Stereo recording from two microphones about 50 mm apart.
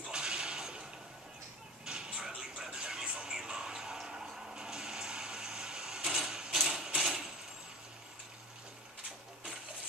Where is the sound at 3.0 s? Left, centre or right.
Centre.